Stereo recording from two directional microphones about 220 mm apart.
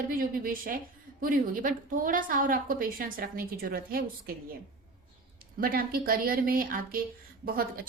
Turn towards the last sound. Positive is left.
turn(degrees=-40)  # may be behind; listen again after turning